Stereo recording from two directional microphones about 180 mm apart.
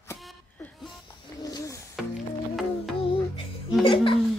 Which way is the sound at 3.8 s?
30° left (ahead or behind).